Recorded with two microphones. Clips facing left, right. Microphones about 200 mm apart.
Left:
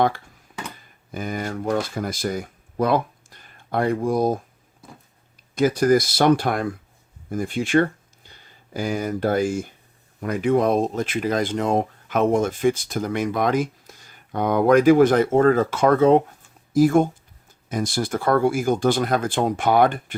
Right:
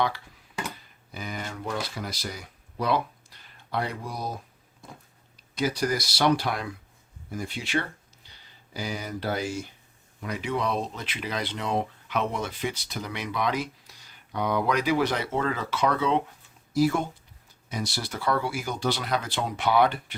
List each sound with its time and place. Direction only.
1.1 s speech: 50° left (ahead or behind)
5.5 s speech: 50° left (ahead or behind)